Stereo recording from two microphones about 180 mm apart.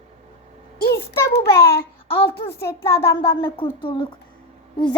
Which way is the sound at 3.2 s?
30° left (ahead or behind).